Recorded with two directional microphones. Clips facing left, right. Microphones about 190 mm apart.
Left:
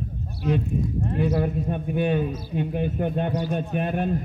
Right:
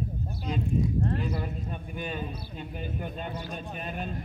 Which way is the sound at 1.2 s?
75° left (ahead or behind).